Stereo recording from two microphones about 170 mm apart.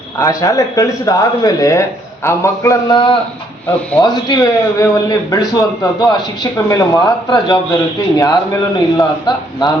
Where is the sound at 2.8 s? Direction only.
30° left (ahead or behind).